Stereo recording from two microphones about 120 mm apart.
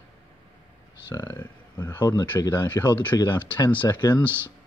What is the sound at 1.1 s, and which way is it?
Speech, 25° left (ahead or behind).